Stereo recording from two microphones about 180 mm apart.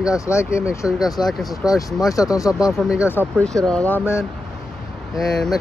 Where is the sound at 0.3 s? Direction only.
15° left (ahead or behind).